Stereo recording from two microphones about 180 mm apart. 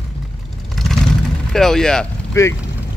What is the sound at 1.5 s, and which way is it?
Speech, 5° left (ahead or behind).